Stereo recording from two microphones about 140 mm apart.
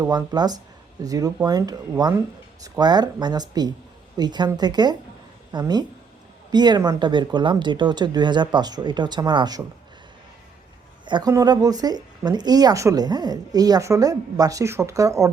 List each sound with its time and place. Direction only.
0.1 s speech: 30° right (ahead or behind)
11.0 s speech: 30° right (ahead or behind)